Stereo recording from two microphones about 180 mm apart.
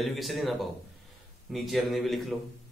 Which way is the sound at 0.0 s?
Centre (ahead or behind).